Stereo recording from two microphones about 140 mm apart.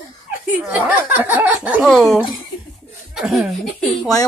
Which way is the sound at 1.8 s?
Centre (ahead or behind).